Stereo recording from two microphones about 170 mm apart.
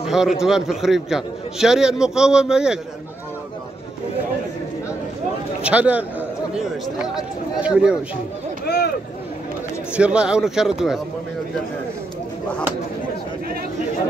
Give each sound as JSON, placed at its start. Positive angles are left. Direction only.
{"t": 0.0, "sound": "a man's voice", "side_deg": 0}
{"t": 5.6, "sound": "a man's voice", "side_deg": -5}
{"t": 8.6, "sound": "a sound", "side_deg": 70}
{"t": 9.9, "sound": "a man's voice", "side_deg": -5}